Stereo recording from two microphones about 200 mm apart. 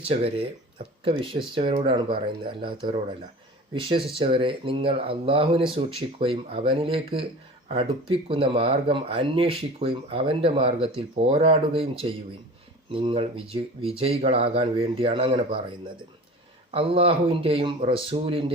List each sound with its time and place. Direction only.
0.1 s speech: 30° right (ahead or behind)
16.7 s speech: 30° right (ahead or behind)